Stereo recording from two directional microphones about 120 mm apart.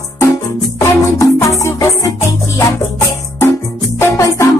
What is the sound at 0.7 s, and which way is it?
Music, 25° left (ahead or behind).